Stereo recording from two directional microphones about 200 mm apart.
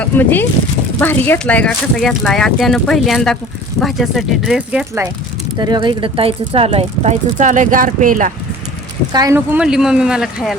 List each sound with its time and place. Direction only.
0.0 s speech: 10° left (ahead or behind)
5.5 s speech: 20° right (ahead or behind); by 8.3 s 40° right (ahead or behind)
9.1 s speech: 15° right (ahead or behind)